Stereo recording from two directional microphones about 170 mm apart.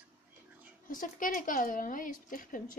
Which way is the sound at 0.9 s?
50° left (ahead or behind).